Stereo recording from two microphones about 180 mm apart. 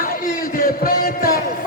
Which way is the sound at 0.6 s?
55° left (ahead or behind).